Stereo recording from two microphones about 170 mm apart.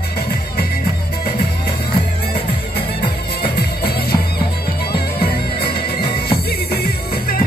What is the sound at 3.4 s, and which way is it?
Music, 70° left (ahead or behind).